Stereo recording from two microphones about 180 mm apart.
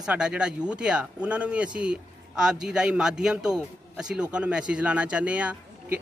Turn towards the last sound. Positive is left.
turn(degrees=-5)  # may be behind; listen again after turning